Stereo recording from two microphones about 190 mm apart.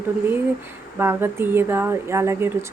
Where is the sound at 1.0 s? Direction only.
10° right (ahead or behind).